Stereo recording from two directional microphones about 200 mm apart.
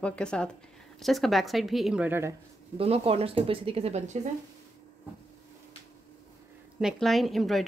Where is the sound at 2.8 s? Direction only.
30° right (ahead or behind).